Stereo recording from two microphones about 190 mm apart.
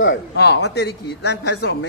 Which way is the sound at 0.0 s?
75° left (ahead or behind).